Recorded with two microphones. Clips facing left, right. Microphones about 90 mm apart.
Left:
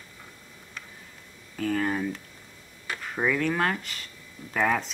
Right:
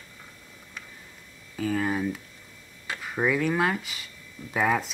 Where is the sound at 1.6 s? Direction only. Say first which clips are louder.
Even; 5° right (ahead or behind).